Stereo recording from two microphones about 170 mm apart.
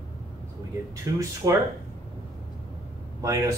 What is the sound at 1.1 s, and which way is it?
Speech, 20° right (ahead or behind).